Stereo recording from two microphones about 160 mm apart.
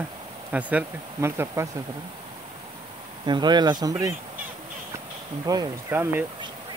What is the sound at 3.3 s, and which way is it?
Speech, 25° right (ahead or behind).